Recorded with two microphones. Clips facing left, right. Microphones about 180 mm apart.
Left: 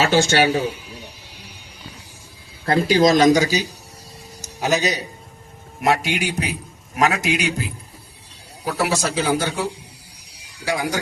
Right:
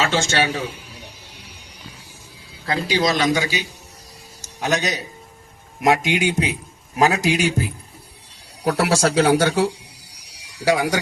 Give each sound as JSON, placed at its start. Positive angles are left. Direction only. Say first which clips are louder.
{"t": 0.1, "sound": "a man's voice", "louder": "left 4 dB", "side_deg": 35}
{"t": 2.6, "sound": "a man's voice", "louder": "left 5 dB", "side_deg": 50}
{"t": 4.4, "sound": "a man's voice", "louder": "left 2 dB", "side_deg": 5}
{"t": 5.8, "sound": "a man's voice", "louder": "right 2 dB", "side_deg": -20}
{"t": 7.0, "sound": "a man's voice", "louder": "right 2 dB", "side_deg": -40}
{"t": 8.6, "sound": "speech", "louder": "right 4 dB", "side_deg": -75}
{"t": 10.7, "sound": "speech", "louder": "right 4 dB", "side_deg": -70}